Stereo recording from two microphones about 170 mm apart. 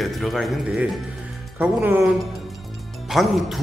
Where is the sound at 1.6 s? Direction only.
10° right (ahead or behind).